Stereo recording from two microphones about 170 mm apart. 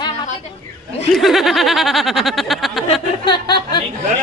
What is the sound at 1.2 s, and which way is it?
Speech, centre (ahead or behind).